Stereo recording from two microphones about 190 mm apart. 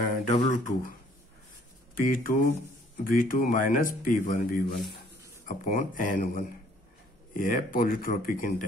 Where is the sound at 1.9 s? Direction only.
50° left (ahead or behind).